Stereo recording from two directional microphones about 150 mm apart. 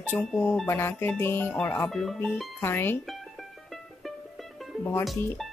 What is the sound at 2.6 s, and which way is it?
Speech, 15° left (ahead or behind).